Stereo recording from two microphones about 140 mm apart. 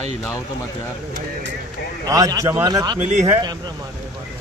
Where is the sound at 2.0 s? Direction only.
25° right (ahead or behind).